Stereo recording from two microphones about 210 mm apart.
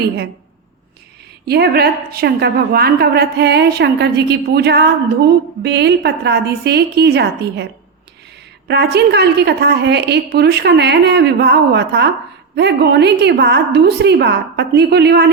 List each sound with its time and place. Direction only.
1.5 s a woman's voice: 50° right (ahead or behind)